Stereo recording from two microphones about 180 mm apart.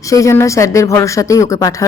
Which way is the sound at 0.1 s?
15° left (ahead or behind).